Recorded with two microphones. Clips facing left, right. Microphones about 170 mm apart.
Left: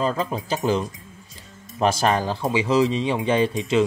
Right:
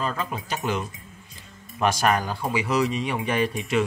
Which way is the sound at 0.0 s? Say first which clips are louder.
Left 5 dB; 35° left (ahead or behind).